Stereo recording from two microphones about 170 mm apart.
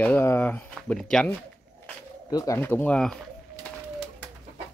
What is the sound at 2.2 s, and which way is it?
Speech, 20° left (ahead or behind).